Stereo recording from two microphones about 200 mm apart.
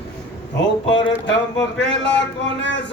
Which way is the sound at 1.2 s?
60° left (ahead or behind).